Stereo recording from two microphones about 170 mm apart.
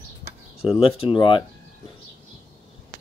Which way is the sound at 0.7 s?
30° left (ahead or behind).